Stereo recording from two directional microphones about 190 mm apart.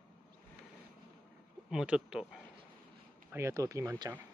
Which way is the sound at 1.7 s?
5° right (ahead or behind).